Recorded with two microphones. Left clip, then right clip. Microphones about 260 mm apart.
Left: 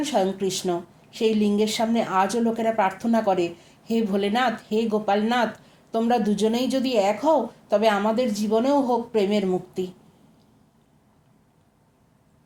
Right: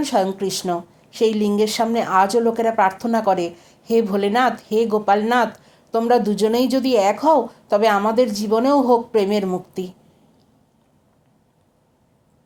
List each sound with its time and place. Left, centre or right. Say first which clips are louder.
0.0 s speech: right 4 dB; right